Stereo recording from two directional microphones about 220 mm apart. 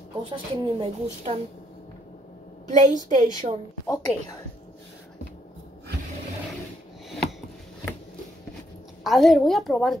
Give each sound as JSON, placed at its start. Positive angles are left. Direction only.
{"t": 0.2, "sound": "a woman's voice", "side_deg": -25}
{"t": 2.7, "sound": "a woman's voice", "side_deg": -35}
{"t": 3.9, "sound": "a woman's voice", "side_deg": 15}
{"t": 9.0, "sound": "a woman's voice", "side_deg": 0}